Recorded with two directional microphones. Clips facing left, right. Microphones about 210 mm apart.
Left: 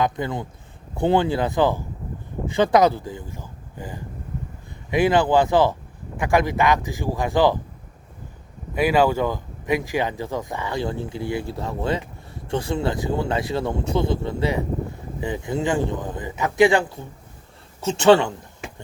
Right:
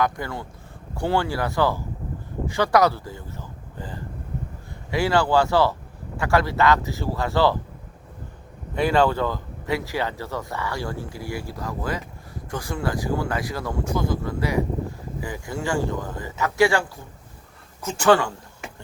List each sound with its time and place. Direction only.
0.0 s speech: 20° left (ahead or behind)
8.7 s speech: 10° left (ahead or behind)